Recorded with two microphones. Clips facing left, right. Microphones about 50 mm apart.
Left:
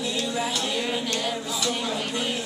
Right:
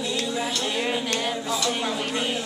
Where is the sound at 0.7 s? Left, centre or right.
Centre.